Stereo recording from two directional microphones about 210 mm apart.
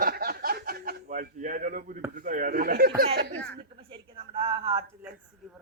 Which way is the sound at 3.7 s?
25° right (ahead or behind).